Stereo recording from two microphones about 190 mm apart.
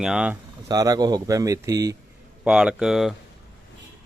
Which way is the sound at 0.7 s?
20° right (ahead or behind).